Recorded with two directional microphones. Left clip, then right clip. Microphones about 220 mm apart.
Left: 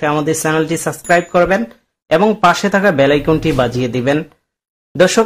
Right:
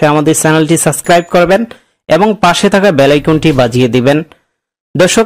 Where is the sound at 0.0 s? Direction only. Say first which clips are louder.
Right 7 dB; 35° right (ahead or behind).